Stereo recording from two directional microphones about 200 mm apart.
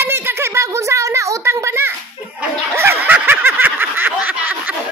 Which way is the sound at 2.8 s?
10° right (ahead or behind).